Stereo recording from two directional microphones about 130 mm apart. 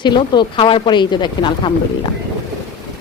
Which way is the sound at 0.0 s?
35° left (ahead or behind).